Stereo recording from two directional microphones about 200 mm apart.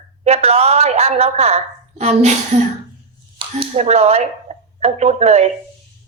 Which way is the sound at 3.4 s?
30° right (ahead or behind).